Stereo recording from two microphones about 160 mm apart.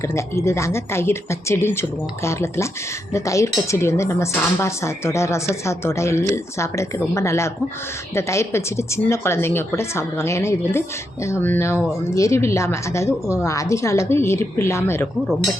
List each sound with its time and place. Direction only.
0.1 s a woman's voice: 15° left (ahead or behind)